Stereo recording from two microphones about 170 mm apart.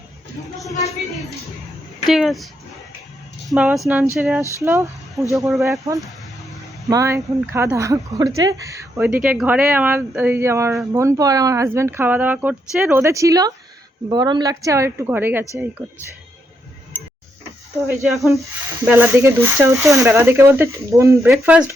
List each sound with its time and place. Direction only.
0.7 s speech: 40° left (ahead or behind)
2.0 s speech: centre (ahead or behind)
3.5 s speech: 5° right (ahead or behind)
3.8 s speech: 15° right (ahead or behind)
4.1 s speech: centre (ahead or behind)
4.6 s speech: 15° right (ahead or behind)
6.4 s a sound: centre (ahead or behind)
6.9 s a woman's voice: 20° right (ahead or behind)
9.0 s a woman's voice: 5° right (ahead or behind)
17.8 s speech: centre (ahead or behind)
18.9 s speech: 10° right (ahead or behind)
21.2 s speech: centre (ahead or behind)